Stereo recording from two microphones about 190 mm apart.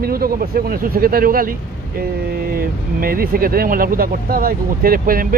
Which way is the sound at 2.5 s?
50° right (ahead or behind).